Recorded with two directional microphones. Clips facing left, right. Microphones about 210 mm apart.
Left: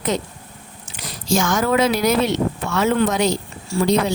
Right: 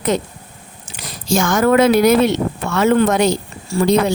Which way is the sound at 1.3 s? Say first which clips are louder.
Right 4 dB; 55° right (ahead or behind).